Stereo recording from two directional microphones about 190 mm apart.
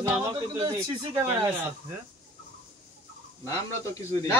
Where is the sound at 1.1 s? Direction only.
15° right (ahead or behind).